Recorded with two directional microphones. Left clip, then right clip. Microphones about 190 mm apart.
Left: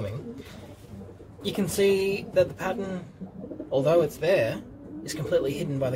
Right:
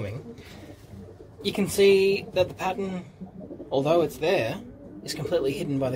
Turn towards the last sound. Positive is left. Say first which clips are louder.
# right 1 dB
turn(degrees=-25)  # may be behind; listen again after turning